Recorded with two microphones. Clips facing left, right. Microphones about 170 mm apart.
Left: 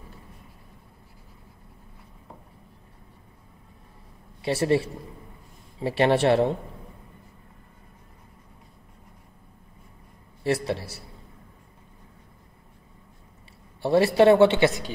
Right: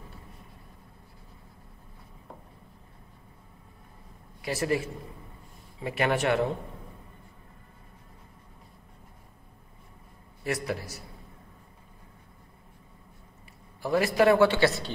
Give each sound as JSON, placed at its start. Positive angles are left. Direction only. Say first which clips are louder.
{"t": 4.4, "sound": "a man's voice", "louder": "left 5 dB", "side_deg": 30}
{"t": 10.4, "sound": "speech", "louder": "left 5 dB", "side_deg": 30}
{"t": 13.7, "sound": "speech", "louder": "left 5 dB", "side_deg": 30}